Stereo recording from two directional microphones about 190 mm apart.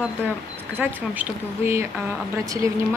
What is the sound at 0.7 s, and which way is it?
Speech, 10° right (ahead or behind).